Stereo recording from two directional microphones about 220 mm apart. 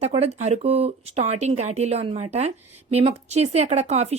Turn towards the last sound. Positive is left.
turn(degrees=-30)  # may be behind; listen again after turning